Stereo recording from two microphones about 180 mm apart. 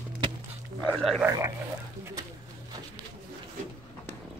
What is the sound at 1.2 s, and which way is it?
Speech, 15° right (ahead or behind).